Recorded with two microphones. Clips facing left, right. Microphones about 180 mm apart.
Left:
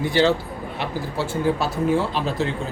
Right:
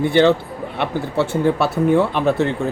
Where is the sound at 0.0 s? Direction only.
60° right (ahead or behind).